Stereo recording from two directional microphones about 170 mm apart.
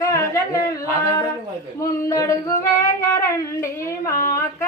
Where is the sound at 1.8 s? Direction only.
20° left (ahead or behind).